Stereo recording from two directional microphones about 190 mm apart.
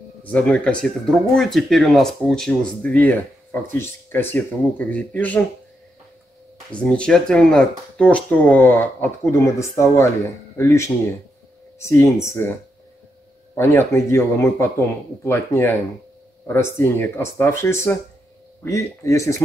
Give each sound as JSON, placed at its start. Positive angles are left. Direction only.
{"t": 0.2, "sound": "speech", "side_deg": 5}
{"t": 6.7, "sound": "speech", "side_deg": 5}
{"t": 13.6, "sound": "speech", "side_deg": 15}